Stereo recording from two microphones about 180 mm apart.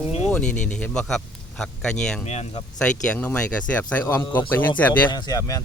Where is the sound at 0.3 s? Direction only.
5° left (ahead or behind).